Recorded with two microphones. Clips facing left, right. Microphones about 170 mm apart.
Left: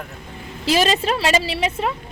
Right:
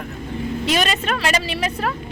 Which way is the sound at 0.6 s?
30° left (ahead or behind).